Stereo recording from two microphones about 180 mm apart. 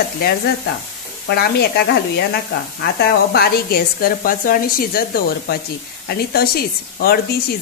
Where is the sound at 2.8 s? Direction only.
65° left (ahead or behind).